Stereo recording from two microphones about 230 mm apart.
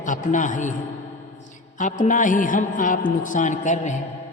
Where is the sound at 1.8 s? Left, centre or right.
Left.